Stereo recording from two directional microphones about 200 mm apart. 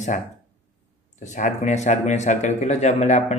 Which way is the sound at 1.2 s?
35° left (ahead or behind).